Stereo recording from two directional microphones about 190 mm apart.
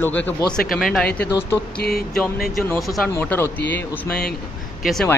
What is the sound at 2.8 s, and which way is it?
Speech, centre (ahead or behind).